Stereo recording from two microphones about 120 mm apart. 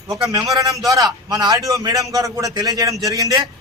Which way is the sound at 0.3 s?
30° right (ahead or behind).